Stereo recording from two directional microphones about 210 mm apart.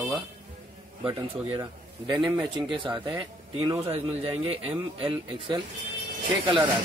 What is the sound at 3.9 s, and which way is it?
A man's voice, 30° right (ahead or behind).